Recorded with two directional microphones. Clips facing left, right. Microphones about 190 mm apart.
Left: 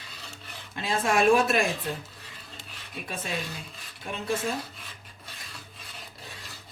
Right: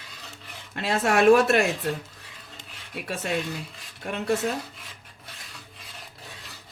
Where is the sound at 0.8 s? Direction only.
70° right (ahead or behind).